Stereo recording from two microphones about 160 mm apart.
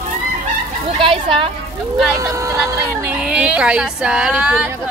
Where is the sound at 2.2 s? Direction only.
20° right (ahead or behind).